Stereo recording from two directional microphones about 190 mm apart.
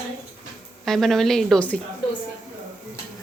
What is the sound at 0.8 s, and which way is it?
Speech, centre (ahead or behind).